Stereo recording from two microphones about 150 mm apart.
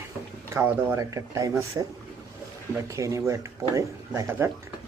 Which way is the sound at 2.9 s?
20° right (ahead or behind).